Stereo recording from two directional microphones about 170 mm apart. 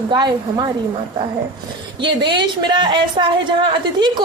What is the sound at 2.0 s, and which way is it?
A man's voice, 30° right (ahead or behind).